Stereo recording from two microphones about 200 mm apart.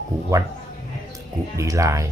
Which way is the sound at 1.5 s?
15° right (ahead or behind).